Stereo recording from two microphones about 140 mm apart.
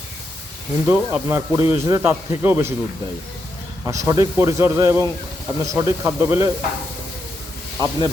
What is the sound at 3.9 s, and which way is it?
A man's voice, 25° right (ahead or behind).